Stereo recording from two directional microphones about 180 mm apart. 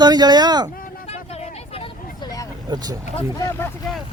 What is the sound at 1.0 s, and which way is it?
Vehicle, 35° left (ahead or behind).